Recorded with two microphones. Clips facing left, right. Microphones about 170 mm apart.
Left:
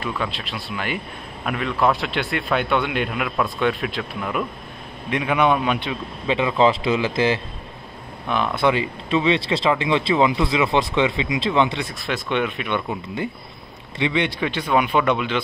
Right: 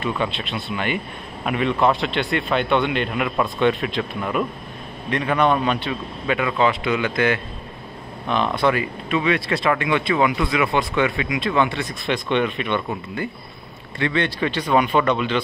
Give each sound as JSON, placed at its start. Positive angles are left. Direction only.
{"t": 0.0, "sound": "a man's voice", "side_deg": 0}
{"t": 6.2, "sound": "speech", "side_deg": 25}
{"t": 8.6, "sound": "speech", "side_deg": 25}
{"t": 11.8, "sound": "speech", "side_deg": 10}
{"t": 13.9, "sound": "speech", "side_deg": 15}